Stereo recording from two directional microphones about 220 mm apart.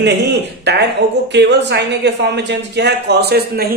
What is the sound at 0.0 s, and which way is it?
Speech, 50° right (ahead or behind).